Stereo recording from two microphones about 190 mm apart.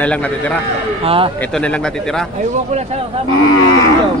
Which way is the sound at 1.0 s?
30° right (ahead or behind).